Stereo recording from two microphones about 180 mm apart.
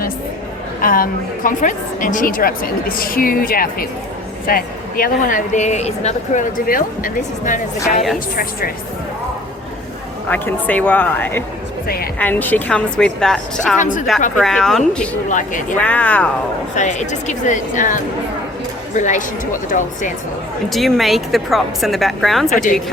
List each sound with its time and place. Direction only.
0.8 s speech: 50° left (ahead or behind)
10.2 s a woman's voice: 10° left (ahead or behind)
13.7 s speech: 45° left (ahead or behind)
14.3 s a woman's voice: 5° left (ahead or behind)
15.3 s speech: 45° left (ahead or behind)
15.8 s a woman's voice: 5° left (ahead or behind)
16.7 s speech: 40° left (ahead or behind)
20.7 s a woman's voice: centre (ahead or behind)
22.4 s speech: 45° left (ahead or behind)